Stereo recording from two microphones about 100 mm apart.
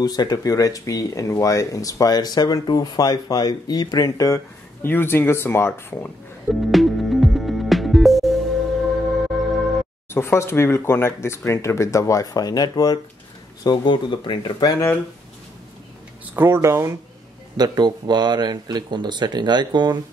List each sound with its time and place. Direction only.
0.0 s speech: 40° left (ahead or behind)
4.8 s speech: 20° left (ahead or behind)
6.5 s music: centre (ahead or behind)
10.1 s speech: 25° left (ahead or behind); by 13.0 s 40° left (ahead or behind)
13.7 s speech: 50° left (ahead or behind)
14.6 s speech: 35° left (ahead or behind)
16.3 s speech: 25° right (ahead or behind)
17.6 s speech: 45° right (ahead or behind)